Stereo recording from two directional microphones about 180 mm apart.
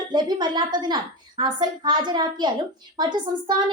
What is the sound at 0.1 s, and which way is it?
A child's voice, 25° right (ahead or behind).